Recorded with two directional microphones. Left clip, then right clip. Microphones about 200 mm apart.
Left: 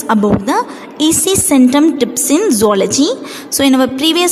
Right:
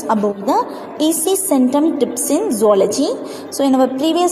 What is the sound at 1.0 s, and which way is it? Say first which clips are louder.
A woman's voice: left 4 dB; 30° left (ahead or behind).